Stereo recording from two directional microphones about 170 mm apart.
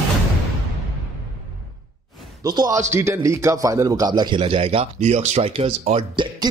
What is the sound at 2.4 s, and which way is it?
Speech, 20° right (ahead or behind).